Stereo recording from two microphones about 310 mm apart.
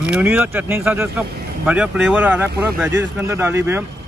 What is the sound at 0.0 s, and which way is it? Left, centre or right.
Speech, centre.